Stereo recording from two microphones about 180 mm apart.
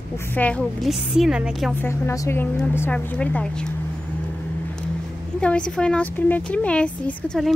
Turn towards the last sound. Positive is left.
turn(degrees=0)  # may be behind; listen again after turning